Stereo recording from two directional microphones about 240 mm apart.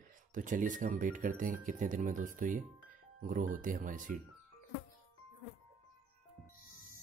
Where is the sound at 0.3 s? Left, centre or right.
Right.